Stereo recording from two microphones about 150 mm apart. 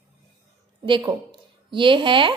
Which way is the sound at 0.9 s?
35° right (ahead or behind).